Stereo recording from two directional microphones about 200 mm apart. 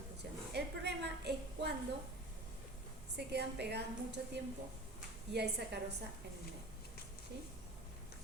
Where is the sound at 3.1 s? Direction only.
55° right (ahead or behind).